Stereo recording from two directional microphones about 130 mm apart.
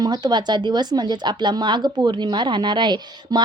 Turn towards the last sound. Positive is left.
turn(degrees=-35)  # may be behind; listen again after turning